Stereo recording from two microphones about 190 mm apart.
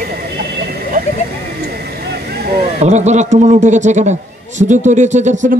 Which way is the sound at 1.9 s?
55° right (ahead or behind).